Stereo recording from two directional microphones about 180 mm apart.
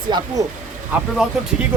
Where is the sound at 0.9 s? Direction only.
10° right (ahead or behind).